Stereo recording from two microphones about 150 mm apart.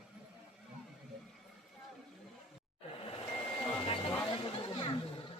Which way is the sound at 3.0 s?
40° left (ahead or behind).